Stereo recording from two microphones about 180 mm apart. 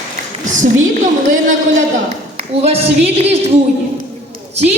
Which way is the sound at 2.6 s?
35° right (ahead or behind).